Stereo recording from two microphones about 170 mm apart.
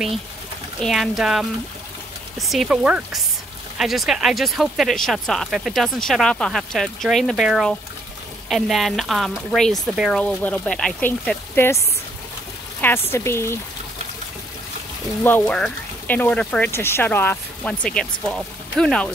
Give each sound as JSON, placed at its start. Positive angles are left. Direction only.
{"t": 0.7, "sound": "speech", "side_deg": 0}
{"t": 12.8, "sound": "speech", "side_deg": 15}
{"t": 15.2, "sound": "speech", "side_deg": 10}